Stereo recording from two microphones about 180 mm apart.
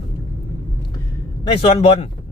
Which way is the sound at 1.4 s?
30° left (ahead or behind).